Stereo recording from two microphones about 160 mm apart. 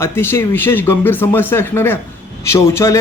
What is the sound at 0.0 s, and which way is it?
A man's voice, 15° left (ahead or behind).